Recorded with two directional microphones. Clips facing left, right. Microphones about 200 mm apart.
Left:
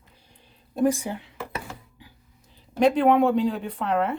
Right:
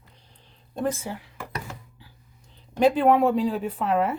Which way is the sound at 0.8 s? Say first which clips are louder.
Left 5 dB; 15° left (ahead or behind).